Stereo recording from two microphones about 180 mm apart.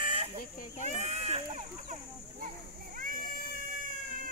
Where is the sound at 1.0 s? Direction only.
35° right (ahead or behind).